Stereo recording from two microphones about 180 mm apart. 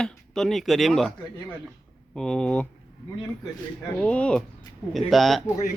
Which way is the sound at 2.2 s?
5° left (ahead or behind).